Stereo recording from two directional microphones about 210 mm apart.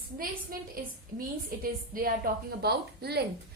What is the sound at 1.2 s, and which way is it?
A woman's voice, 45° right (ahead or behind).